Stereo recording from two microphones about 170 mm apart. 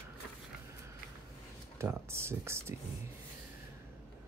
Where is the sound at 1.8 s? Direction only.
15° right (ahead or behind).